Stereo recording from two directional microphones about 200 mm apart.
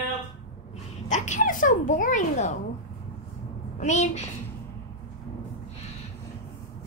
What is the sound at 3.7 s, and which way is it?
Speech, 35° left (ahead or behind).